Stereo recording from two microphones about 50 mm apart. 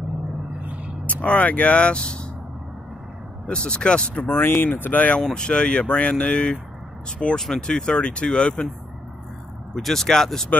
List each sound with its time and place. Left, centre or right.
0.6 s vehicle: right
1.0 s speech: left
3.4 s speech: left
4.2 s speech: left
5.3 s speech: centre
9.8 s speech: centre